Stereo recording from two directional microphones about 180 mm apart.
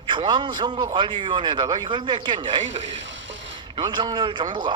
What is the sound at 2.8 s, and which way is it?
Vehicle, 90° right.